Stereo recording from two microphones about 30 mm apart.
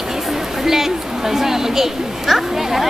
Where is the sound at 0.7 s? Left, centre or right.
Centre.